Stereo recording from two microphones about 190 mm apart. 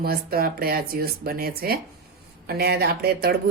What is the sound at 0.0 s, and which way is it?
Speech, 50° right (ahead or behind).